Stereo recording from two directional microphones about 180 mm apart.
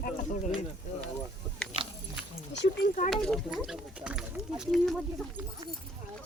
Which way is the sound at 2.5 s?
80° left.